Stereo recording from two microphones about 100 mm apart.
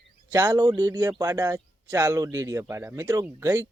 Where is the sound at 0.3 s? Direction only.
25° right (ahead or behind).